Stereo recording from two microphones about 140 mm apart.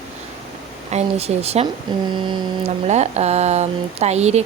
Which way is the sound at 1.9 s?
30° right (ahead or behind).